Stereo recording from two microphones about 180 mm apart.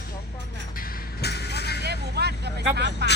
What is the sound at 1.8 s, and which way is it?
Vehicle, 65° right (ahead or behind).